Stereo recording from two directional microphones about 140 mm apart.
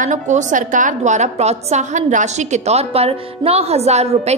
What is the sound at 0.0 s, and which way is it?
A woman's voice, 60° right (ahead or behind).